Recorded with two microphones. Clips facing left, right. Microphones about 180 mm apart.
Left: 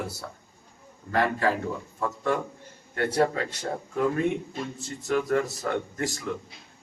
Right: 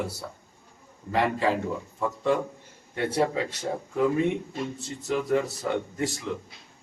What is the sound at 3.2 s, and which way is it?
Speech, 5° right (ahead or behind).